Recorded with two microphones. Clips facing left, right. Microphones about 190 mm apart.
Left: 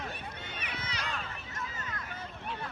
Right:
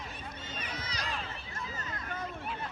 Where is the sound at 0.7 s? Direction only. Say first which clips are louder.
Even; 40° right (ahead or behind).